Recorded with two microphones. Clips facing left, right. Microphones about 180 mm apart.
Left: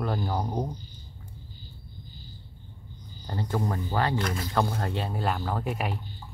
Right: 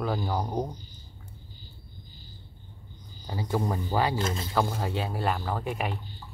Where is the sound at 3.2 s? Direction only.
5° right (ahead or behind).